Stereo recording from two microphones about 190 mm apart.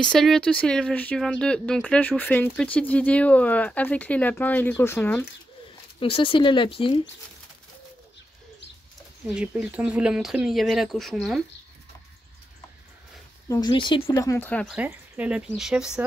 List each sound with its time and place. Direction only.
0.0 s speech: 5° left (ahead or behind)
5.9 s speech: 30° left (ahead or behind)
9.3 s speech: 5° right (ahead or behind)
13.5 s speech: 25° left (ahead or behind); by 14.8 s 5° left (ahead or behind)
14.8 s speech: 5° right (ahead or behind)